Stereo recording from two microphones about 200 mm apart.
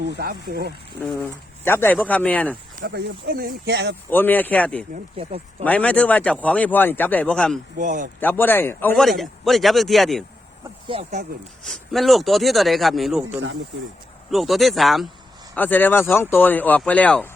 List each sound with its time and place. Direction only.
0.1 s speech: 55° right (ahead or behind)
1.2 s speech: 10° left (ahead or behind)
2.7 s speech: 45° right (ahead or behind)
4.1 s speech: 10° left (ahead or behind)
5.1 s speech: 30° right (ahead or behind)
5.6 s speech: 5° left (ahead or behind)
7.8 s a man's voice: 40° right (ahead or behind)
8.2 s a man's voice: 10° left (ahead or behind)
10.9 s speech: 25° right (ahead or behind)
11.6 s a man's voice: centre (ahead or behind)